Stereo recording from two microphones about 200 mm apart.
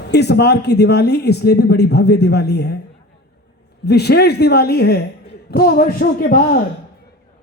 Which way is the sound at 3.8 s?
55° left (ahead or behind).